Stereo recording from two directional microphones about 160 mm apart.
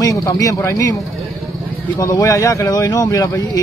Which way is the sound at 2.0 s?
20° left (ahead or behind).